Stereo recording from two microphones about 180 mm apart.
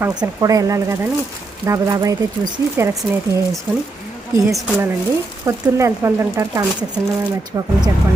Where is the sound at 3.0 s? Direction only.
Centre (ahead or behind).